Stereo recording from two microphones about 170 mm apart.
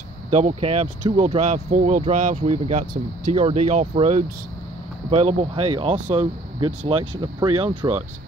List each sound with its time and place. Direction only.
0.3 s speech: 40° right (ahead or behind)
6.9 s speech: 30° right (ahead or behind)